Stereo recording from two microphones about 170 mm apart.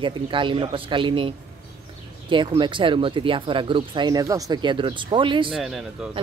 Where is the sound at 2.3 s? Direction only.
30° right (ahead or behind).